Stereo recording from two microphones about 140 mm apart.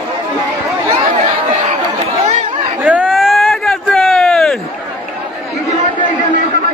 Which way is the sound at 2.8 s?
10° right (ahead or behind).